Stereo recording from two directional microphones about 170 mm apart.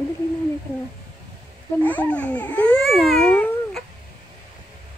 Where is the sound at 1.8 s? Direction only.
10° left (ahead or behind).